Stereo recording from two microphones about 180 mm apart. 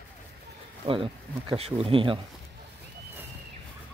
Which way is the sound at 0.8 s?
30° right (ahead or behind).